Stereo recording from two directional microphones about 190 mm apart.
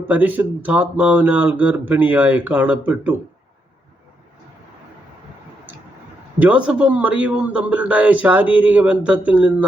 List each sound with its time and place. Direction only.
0.1 s a man's voice: 10° right (ahead or behind)
6.4 s a man's voice: 5° right (ahead or behind)